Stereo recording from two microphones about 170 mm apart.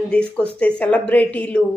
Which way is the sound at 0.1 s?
5° left (ahead or behind).